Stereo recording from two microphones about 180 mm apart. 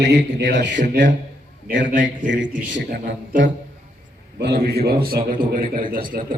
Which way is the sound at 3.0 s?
45° right (ahead or behind).